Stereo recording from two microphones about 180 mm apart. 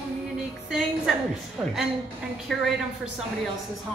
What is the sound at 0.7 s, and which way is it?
Speech, centre (ahead or behind).